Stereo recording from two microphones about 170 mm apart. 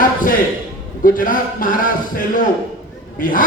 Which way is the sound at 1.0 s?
55° left (ahead or behind).